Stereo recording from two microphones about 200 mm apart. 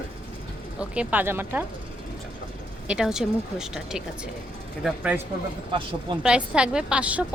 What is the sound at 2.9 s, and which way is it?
A woman's voice, 5° right (ahead or behind).